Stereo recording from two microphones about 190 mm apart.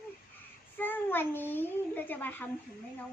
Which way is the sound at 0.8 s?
10° left (ahead or behind).